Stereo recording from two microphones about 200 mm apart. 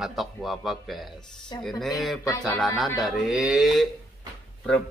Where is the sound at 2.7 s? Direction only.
Centre (ahead or behind).